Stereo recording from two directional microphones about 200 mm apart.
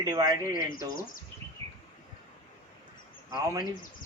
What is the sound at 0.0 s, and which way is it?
Speech, 20° right (ahead or behind).